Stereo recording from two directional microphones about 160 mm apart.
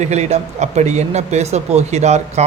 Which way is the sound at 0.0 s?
45° right (ahead or behind).